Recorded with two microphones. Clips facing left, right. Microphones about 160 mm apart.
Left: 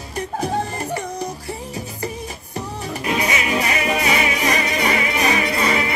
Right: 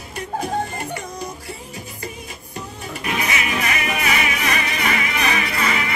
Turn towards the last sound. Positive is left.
turn(degrees=30)  # may be behind; listen again after turning